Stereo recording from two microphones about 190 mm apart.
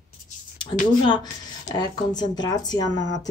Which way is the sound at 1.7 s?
20° left (ahead or behind).